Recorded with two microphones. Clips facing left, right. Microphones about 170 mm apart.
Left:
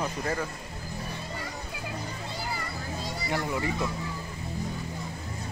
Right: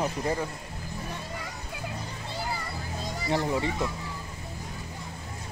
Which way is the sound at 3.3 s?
30° right (ahead or behind).